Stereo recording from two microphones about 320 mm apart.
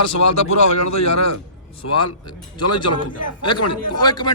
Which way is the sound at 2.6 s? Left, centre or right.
Left.